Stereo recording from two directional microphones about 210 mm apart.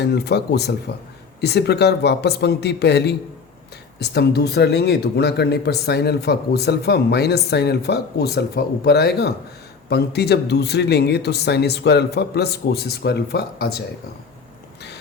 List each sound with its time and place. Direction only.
0.0 s speech: 55° left (ahead or behind)